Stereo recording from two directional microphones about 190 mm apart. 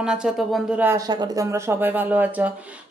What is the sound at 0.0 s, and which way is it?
Speech, 5° right (ahead or behind).